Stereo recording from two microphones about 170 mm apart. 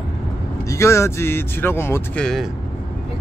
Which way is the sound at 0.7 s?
15° left (ahead or behind).